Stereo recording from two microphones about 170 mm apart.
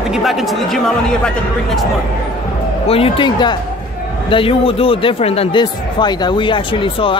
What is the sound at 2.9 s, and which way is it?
Speech, 30° left (ahead or behind).